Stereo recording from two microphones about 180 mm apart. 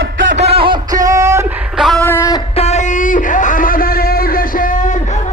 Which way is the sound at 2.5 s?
40° left (ahead or behind).